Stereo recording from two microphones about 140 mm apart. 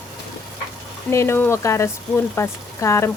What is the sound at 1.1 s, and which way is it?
Speech, 20° left (ahead or behind).